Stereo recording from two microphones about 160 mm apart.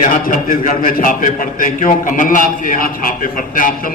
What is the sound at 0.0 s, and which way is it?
A man's voice, 55° left (ahead or behind).